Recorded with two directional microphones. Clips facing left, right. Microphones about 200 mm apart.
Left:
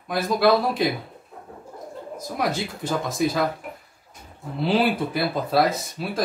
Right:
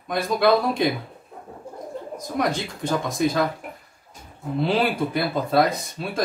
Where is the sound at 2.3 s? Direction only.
5° left (ahead or behind).